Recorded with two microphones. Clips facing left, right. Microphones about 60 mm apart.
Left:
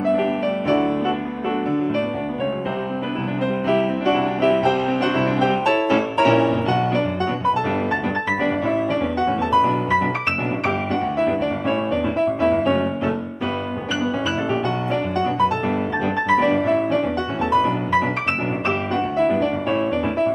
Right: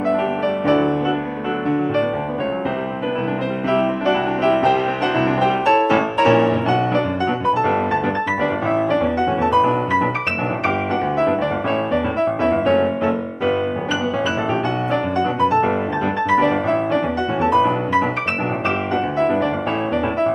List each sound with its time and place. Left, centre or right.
0.7 s music: centre
4.0 s music: centre
5.1 s music: centre
9.6 s music: centre
12.2 s music: centre
19.1 s music: centre